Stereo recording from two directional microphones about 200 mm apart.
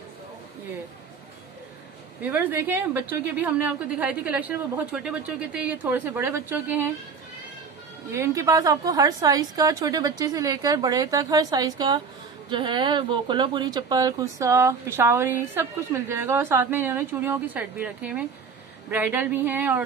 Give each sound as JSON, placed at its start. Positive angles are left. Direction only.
{"t": 2.2, "sound": "speech", "side_deg": -10}
{"t": 8.1, "sound": "speech", "side_deg": -15}